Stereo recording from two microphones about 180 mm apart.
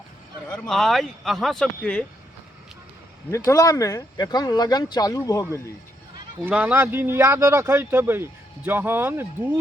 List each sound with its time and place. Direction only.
0.4 s speech: 5° left (ahead or behind)
3.3 s speech: 20° left (ahead or behind)
6.4 s a man's voice: 10° right (ahead or behind)